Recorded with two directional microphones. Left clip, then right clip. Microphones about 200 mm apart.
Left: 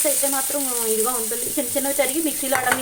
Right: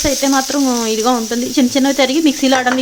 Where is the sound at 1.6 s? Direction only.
50° right (ahead or behind).